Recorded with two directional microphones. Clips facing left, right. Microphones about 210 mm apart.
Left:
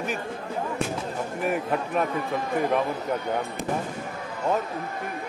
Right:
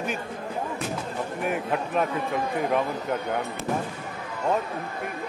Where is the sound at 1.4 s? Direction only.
Centre (ahead or behind).